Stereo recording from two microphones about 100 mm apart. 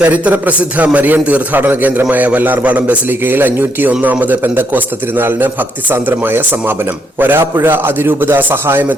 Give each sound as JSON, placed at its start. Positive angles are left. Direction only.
{"t": 0.0, "sound": "a man's voice", "side_deg": -15}